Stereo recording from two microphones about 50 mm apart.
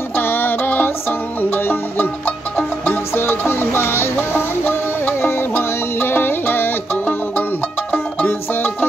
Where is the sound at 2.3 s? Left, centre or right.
Left.